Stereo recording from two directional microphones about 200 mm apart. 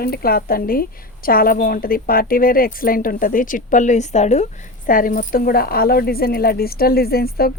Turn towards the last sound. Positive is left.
turn(degrees=50)  # may be behind; listen again after turning